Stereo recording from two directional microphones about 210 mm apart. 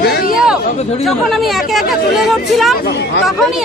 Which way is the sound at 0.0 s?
45° left (ahead or behind).